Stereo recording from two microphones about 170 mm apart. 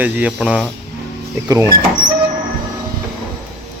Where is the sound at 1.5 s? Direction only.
20° right (ahead or behind).